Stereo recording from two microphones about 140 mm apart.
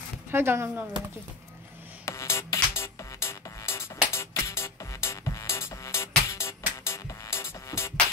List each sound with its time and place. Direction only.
0.3 s speech: 15° right (ahead or behind)
2.0 s music: 20° left (ahead or behind)